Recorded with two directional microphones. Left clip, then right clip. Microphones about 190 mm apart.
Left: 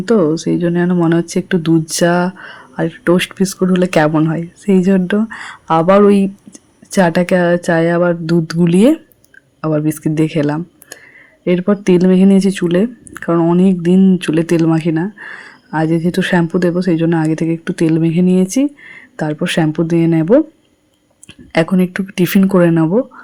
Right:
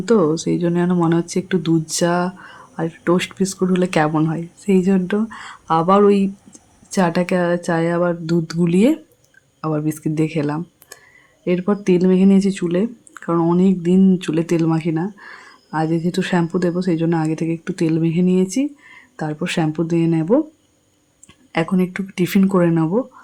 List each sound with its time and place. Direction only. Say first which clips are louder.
0.0 s speech: left 3 dB; 10° left (ahead or behind)
21.5 s speech: left 6 dB; 25° left (ahead or behind)